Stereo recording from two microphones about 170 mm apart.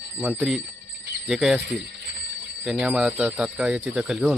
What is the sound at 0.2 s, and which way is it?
Speech, 5° right (ahead or behind).